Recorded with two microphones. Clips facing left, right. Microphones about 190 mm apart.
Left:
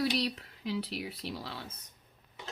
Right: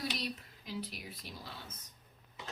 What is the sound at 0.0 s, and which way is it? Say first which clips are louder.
Speech: left 8 dB; 70° left (ahead or behind).